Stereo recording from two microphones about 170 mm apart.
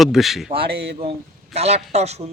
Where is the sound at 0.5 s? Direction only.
75° right (ahead or behind).